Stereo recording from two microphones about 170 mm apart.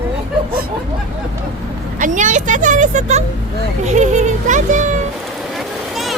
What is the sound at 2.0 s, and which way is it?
Speech, 50° right (ahead or behind).